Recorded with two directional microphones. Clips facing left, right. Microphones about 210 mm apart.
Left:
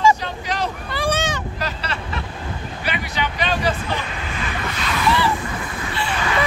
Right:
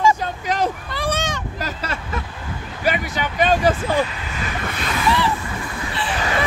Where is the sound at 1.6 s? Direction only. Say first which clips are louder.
Even; 45° right (ahead or behind).